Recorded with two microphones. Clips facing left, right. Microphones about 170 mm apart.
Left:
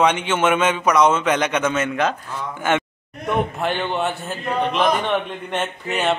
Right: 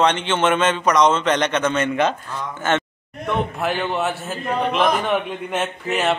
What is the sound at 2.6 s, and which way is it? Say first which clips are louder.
Speech: even; 10° left (ahead or behind).